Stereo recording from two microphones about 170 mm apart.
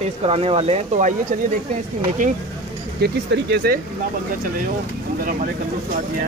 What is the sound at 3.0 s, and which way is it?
Speech, 75° right (ahead or behind).